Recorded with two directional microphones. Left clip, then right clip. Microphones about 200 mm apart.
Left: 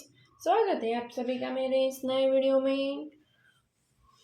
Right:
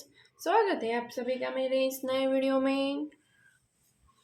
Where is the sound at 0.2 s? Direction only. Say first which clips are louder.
Even; 30° right (ahead or behind).